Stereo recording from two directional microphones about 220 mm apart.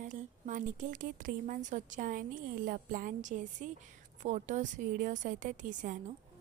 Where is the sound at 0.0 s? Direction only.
35° right (ahead or behind).